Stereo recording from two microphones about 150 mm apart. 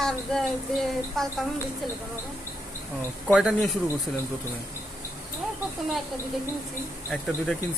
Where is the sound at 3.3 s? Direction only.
5° left (ahead or behind).